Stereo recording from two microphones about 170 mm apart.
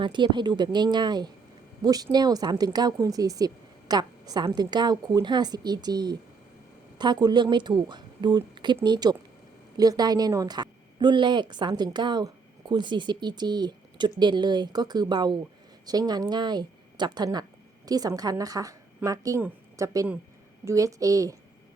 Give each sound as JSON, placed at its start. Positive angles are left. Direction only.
{"t": 0.0, "sound": "a woman's voice", "side_deg": -25}